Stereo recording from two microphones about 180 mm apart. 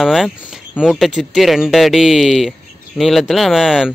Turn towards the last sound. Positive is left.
turn(degrees=0)  # may be behind; listen again after turning